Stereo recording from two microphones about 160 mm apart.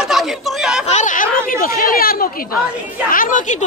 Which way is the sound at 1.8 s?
65° left (ahead or behind).